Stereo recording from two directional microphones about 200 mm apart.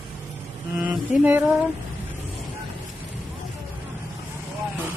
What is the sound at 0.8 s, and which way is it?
Speech, 10° right (ahead or behind).